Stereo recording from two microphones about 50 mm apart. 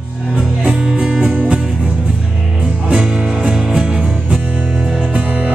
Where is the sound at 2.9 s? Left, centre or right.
Centre.